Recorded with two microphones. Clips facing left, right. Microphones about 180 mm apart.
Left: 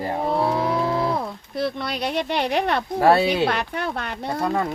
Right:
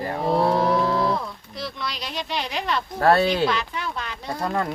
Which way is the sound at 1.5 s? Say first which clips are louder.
Left 8 dB; 55° left (ahead or behind).